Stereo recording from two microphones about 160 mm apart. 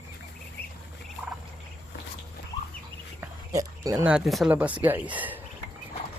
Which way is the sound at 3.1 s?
20° right (ahead or behind).